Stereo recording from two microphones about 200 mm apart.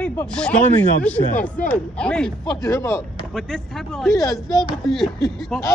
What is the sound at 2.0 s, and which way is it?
Speech, 5° left (ahead or behind).